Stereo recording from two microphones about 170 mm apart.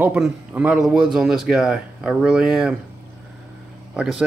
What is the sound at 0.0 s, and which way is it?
Speech, 10° right (ahead or behind).